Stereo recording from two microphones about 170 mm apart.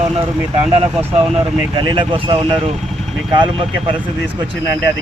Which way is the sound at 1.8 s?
30° right (ahead or behind).